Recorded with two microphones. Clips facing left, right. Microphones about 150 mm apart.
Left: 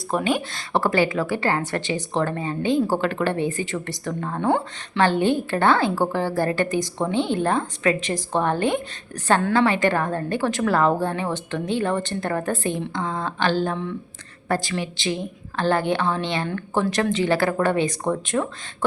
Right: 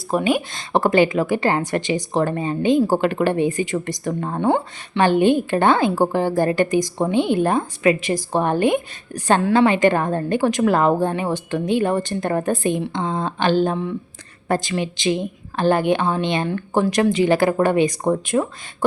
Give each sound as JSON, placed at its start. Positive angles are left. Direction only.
{"t": 0.1, "sound": "a woman's voice", "side_deg": -5}
{"t": 4.4, "sound": "a woman's voice", "side_deg": -15}